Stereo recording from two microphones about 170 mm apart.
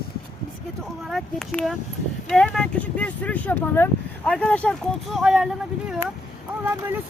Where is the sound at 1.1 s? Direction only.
Centre (ahead or behind).